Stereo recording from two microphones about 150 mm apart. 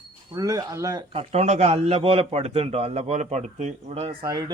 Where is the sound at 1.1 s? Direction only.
40° right (ahead or behind).